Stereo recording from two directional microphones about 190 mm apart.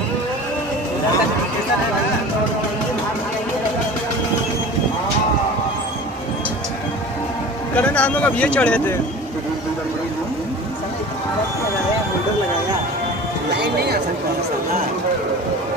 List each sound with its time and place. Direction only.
7.7 s speech: 5° left (ahead or behind)
13.5 s speech: 60° right (ahead or behind)